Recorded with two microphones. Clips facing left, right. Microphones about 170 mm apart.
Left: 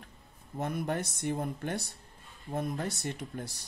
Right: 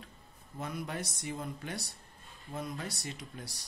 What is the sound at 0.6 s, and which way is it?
Speech, 55° left (ahead or behind).